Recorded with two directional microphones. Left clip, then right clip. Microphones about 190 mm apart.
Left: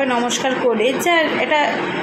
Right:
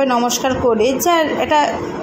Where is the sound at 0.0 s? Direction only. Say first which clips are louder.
Right 2 dB; 30° right (ahead or behind).